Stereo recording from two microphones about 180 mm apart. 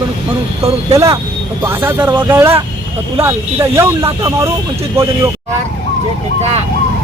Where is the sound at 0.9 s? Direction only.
20° right (ahead or behind).